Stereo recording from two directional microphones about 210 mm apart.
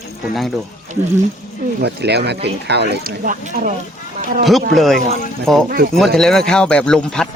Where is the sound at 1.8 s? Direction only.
50° right (ahead or behind).